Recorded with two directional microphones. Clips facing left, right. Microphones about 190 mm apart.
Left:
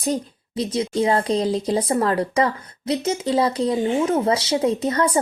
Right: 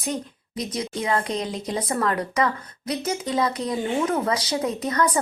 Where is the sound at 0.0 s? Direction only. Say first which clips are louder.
Left 5 dB; 30° left (ahead or behind).